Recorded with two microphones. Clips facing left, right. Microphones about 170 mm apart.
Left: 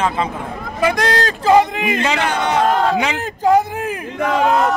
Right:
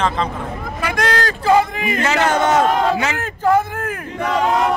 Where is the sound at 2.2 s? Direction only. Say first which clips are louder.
Right 3 dB; 45° right (ahead or behind).